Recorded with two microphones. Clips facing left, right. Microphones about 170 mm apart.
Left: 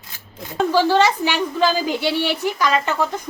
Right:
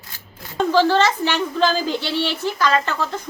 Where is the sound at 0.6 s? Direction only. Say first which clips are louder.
Even; 10° left (ahead or behind).